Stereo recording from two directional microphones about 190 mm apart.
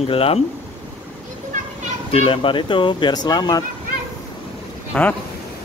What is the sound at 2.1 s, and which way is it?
Speech, 30° left (ahead or behind).